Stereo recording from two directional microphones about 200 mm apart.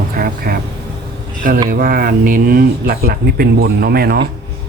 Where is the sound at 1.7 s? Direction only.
45° right (ahead or behind).